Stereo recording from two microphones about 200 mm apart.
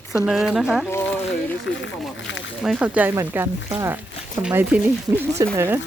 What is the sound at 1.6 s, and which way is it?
Speech, 70° left (ahead or behind).